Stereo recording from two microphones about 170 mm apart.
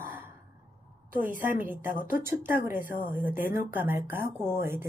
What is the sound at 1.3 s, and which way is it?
Speech, 50° left (ahead or behind).